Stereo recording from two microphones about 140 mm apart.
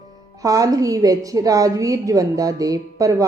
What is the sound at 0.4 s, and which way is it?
A woman's voice, 25° right (ahead or behind).